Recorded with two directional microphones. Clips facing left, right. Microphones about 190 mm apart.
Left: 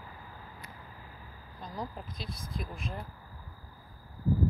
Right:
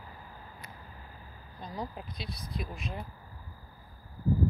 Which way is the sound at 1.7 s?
Centre (ahead or behind).